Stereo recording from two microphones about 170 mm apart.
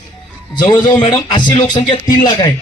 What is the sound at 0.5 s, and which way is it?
Speech, 25° left (ahead or behind).